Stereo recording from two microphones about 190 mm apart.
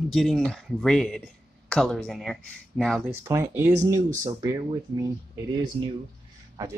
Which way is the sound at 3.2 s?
15° right (ahead or behind).